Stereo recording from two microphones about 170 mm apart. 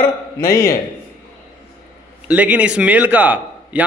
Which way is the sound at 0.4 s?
15° left (ahead or behind).